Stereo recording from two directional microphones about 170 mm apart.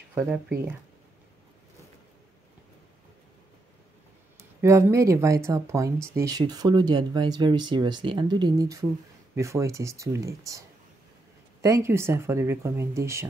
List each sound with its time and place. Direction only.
0.1 s speech: 10° right (ahead or behind)
4.4 s speech: 15° right (ahead or behind)
11.6 s speech: 15° right (ahead or behind)